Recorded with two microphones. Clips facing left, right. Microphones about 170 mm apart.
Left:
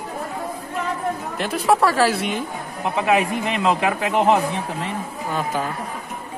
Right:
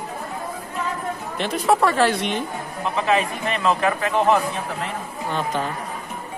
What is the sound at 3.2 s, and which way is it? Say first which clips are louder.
Speech: left 2 dB; 75° left (ahead or behind).